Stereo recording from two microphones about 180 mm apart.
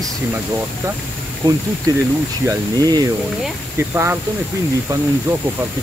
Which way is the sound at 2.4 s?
20° right (ahead or behind).